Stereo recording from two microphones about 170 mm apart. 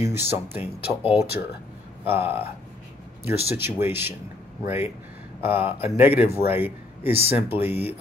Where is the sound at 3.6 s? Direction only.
15° right (ahead or behind).